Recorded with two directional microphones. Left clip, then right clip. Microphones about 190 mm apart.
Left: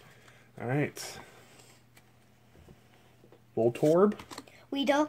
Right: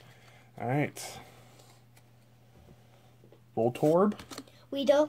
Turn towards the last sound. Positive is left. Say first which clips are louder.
# right 3 dB
turn(degrees=35)  # may be behind; listen again after turning